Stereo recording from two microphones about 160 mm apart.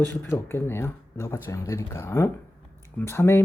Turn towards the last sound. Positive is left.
turn(degrees=15)  # may be behind; listen again after turning